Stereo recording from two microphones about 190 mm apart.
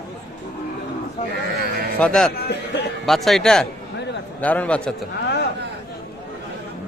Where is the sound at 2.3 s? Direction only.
60° left (ahead or behind).